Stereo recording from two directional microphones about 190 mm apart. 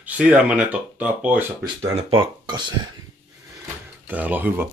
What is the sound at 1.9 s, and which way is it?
Speech, 25° right (ahead or behind).